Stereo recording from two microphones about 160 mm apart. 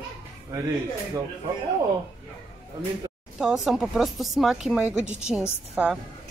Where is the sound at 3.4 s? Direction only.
5° right (ahead or behind).